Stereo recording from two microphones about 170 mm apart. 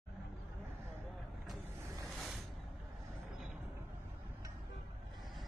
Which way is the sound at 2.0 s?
Centre (ahead or behind).